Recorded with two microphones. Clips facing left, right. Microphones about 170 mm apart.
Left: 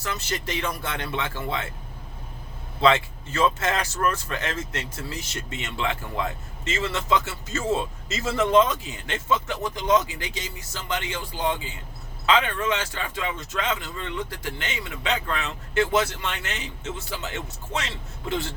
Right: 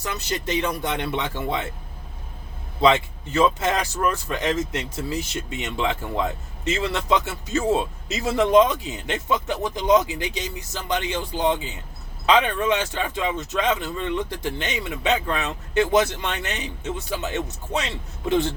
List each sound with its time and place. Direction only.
0.0 s speech: 15° right (ahead or behind)
2.8 s speech: 15° right (ahead or behind)